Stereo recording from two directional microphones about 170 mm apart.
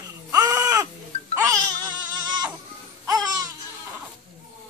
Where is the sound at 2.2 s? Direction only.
25° right (ahead or behind).